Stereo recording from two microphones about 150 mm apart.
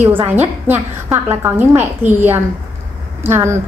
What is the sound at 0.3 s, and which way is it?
A woman's voice, 15° right (ahead or behind).